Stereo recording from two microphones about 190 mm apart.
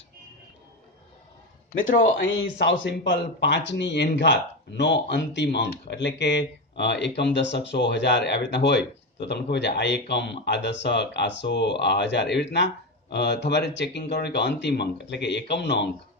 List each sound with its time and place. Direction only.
2.0 s speech: 80° left; by 15.9 s 65° left (ahead or behind)